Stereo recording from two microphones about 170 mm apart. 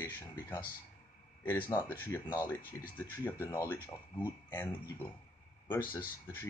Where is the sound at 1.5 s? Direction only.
10° left (ahead or behind).